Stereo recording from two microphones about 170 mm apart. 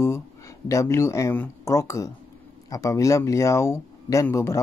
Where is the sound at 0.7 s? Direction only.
15° left (ahead or behind).